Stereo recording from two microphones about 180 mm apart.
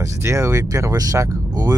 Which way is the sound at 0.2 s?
15° right (ahead or behind).